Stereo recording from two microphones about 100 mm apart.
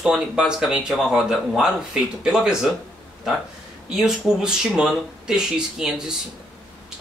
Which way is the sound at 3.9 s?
5° right (ahead or behind).